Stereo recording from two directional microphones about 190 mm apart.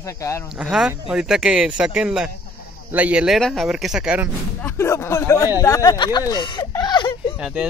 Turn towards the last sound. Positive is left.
turn(degrees=-5)  # may be behind; listen again after turning